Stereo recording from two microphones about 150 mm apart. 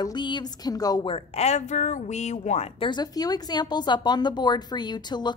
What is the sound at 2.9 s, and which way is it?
A woman's voice, 25° left (ahead or behind).